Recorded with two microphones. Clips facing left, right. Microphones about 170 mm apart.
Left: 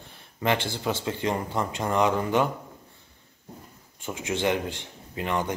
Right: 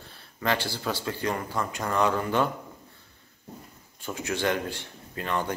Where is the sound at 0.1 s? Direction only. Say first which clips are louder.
Left 2 dB; 20° left (ahead or behind).